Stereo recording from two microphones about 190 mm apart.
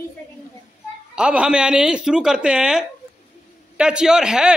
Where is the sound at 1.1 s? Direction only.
5° right (ahead or behind).